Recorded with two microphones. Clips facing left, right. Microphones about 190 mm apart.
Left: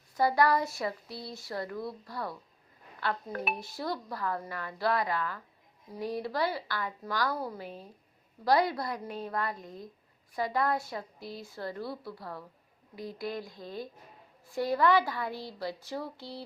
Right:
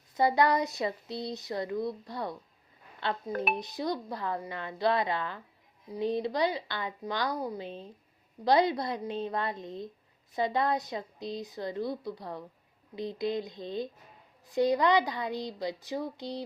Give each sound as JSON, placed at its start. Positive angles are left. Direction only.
{"t": 0.1, "sound": "a woman's voice", "side_deg": -20}